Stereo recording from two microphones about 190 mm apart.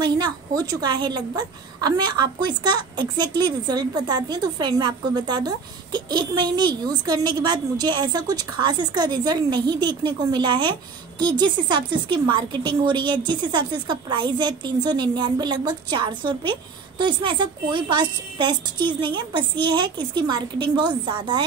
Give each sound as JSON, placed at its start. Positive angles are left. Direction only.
{"t": 0.0, "sound": "a woman's voice", "side_deg": -20}